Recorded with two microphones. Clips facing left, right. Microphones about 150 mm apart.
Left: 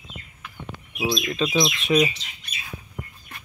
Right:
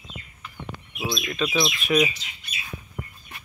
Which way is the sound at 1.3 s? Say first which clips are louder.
Left 2 dB; 30° left (ahead or behind).